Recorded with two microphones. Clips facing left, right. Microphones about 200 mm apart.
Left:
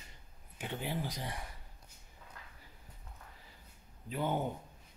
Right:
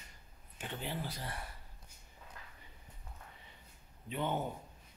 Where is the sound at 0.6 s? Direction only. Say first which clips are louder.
Left 3 dB; 10° left (ahead or behind).